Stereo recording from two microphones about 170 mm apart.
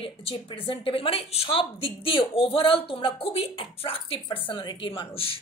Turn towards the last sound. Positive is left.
turn(degrees=35)  # may be behind; listen again after turning